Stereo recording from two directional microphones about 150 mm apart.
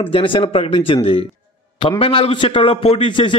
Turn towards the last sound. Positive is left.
turn(degrees=35)  # may be behind; listen again after turning